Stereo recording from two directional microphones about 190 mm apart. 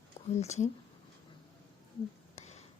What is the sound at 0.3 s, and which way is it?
Speech, 35° left (ahead or behind).